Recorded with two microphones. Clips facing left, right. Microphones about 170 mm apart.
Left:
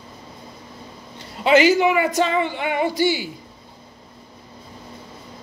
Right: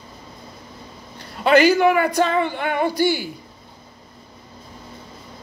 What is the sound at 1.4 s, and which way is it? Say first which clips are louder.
A man's voice: right 1 dB; 50° right (ahead or behind).